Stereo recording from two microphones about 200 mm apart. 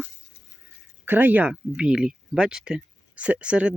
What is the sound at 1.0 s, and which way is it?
Speech, 10° right (ahead or behind).